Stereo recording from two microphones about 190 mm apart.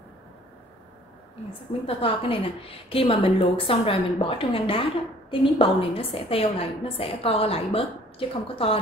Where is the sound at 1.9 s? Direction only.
30° left (ahead or behind).